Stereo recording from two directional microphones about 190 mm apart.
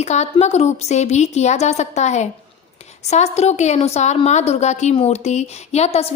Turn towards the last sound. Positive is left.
turn(degrees=35)  # may be behind; listen again after turning